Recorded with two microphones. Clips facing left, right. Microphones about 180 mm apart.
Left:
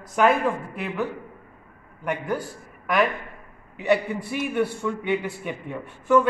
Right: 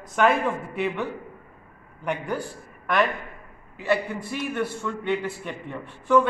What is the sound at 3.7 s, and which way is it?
A man's voice, 20° left (ahead or behind).